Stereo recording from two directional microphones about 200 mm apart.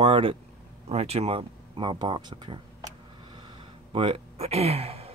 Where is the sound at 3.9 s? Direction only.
30° right (ahead or behind).